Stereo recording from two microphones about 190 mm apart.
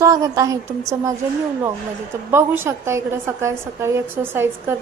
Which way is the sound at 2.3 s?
15° right (ahead or behind).